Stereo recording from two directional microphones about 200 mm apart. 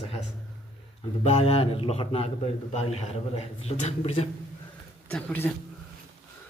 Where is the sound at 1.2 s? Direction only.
30° left (ahead or behind).